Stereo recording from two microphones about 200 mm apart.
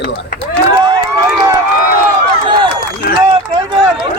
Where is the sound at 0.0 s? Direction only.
55° left (ahead or behind).